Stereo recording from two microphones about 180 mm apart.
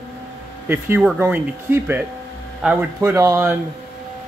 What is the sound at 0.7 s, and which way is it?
Speech, 10° right (ahead or behind).